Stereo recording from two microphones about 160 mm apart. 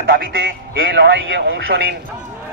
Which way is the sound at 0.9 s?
90° right.